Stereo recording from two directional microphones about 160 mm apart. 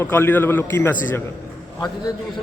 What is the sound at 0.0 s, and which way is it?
Speech, 15° left (ahead or behind).